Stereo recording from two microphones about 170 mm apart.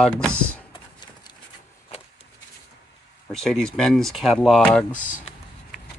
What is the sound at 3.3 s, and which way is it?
Speech, 5° left (ahead or behind).